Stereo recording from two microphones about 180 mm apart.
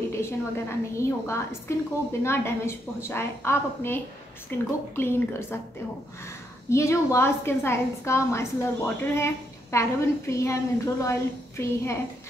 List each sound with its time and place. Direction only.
0.1 s a woman's voice: 15° left (ahead or behind)